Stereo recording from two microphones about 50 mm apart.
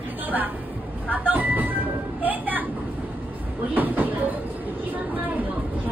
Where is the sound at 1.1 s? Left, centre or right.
Right.